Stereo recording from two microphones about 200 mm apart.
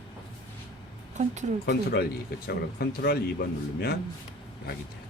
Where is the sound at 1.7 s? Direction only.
50° left (ahead or behind).